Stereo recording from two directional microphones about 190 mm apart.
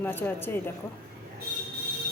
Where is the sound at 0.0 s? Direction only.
10° left (ahead or behind).